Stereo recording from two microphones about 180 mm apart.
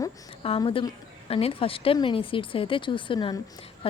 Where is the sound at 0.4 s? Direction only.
30° left (ahead or behind).